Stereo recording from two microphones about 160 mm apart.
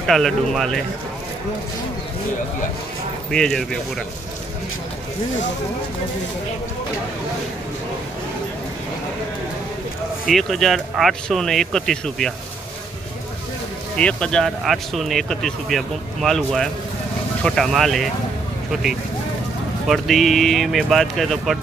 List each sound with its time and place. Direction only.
0.0 s speech: centre (ahead or behind)
3.3 s speech: 5° left (ahead or behind)
10.2 s speech: centre (ahead or behind)
13.9 s speech: 5° left (ahead or behind)